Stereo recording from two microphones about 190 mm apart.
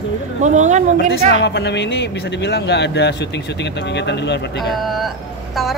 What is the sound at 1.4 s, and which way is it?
Speech, 65° left (ahead or behind).